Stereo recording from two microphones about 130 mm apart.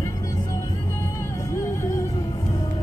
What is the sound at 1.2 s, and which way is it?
Music, 20° left (ahead or behind).